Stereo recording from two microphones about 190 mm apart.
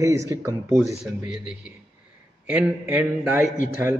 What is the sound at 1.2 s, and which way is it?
A man's voice, 5° right (ahead or behind).